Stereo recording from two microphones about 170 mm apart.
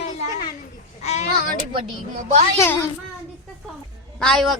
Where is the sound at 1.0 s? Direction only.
40° left (ahead or behind).